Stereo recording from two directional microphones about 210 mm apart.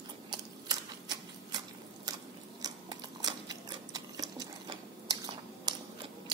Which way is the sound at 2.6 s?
20° right (ahead or behind).